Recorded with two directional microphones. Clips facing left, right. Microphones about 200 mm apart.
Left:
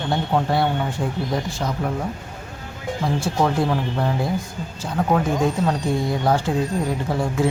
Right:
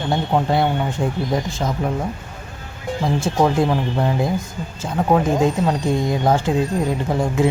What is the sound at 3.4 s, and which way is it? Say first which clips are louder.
Speech: right 3 dB; 20° right (ahead or behind).